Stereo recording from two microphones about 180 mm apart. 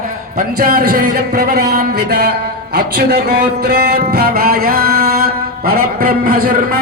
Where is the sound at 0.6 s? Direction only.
55° right (ahead or behind).